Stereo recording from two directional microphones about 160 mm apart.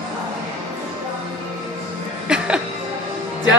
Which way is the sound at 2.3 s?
5° right (ahead or behind).